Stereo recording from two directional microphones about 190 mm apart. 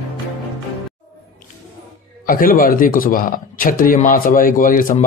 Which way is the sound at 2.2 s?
45° left (ahead or behind).